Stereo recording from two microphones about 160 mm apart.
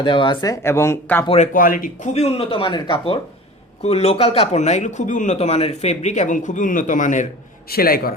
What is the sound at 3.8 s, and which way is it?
Speech, 40° left (ahead or behind).